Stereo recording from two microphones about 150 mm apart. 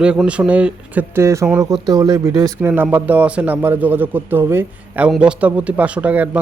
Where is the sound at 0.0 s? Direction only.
5° right (ahead or behind).